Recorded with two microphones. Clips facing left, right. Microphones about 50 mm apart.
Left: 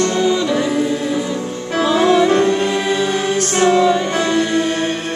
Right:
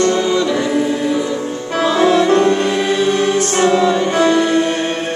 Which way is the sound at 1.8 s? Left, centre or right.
Centre.